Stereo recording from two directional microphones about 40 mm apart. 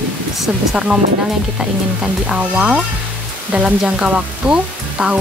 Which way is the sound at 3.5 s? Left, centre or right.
Right.